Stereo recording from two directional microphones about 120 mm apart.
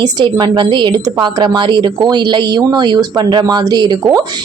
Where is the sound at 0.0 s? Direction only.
35° right (ahead or behind).